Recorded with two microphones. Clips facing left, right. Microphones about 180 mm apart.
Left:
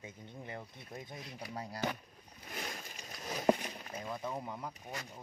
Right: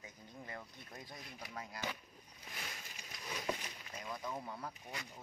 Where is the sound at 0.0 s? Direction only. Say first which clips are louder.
Left 5 dB; 25° left (ahead or behind).